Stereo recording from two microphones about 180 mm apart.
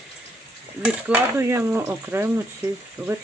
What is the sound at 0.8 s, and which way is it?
Speech, 10° right (ahead or behind).